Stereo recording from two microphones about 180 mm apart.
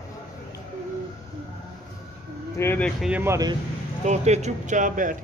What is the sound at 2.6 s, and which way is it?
Speech, 10° left (ahead or behind).